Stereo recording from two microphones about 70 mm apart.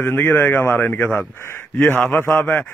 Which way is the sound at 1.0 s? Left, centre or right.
Centre.